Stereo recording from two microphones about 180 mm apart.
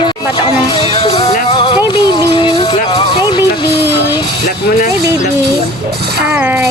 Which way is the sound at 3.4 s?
10° right (ahead or behind).